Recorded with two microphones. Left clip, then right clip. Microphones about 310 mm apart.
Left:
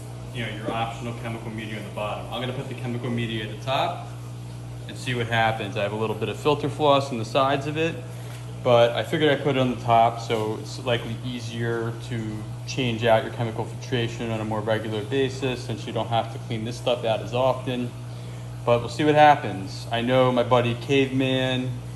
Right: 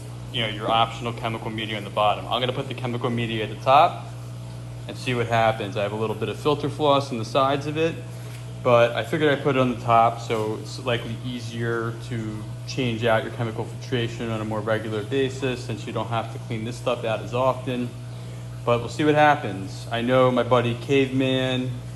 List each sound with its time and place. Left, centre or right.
0.7 s a man's voice: centre
1.2 s a man's voice: right
3.0 s a man's voice: centre
4.9 s a man's voice: centre